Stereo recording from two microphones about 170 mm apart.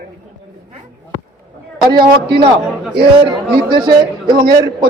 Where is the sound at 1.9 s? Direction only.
30° right (ahead or behind).